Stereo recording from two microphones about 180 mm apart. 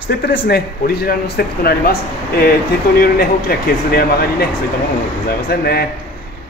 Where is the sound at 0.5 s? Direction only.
60° left (ahead or behind).